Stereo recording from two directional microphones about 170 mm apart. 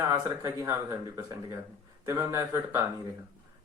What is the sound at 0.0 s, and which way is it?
Speech, 15° right (ahead or behind).